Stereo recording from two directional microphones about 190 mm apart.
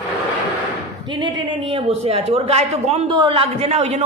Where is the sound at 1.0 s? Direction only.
25° right (ahead or behind).